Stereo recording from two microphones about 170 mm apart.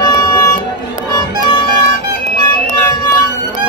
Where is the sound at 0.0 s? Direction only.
25° left (ahead or behind).